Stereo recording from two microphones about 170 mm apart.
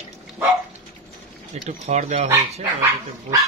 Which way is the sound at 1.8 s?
50° right (ahead or behind).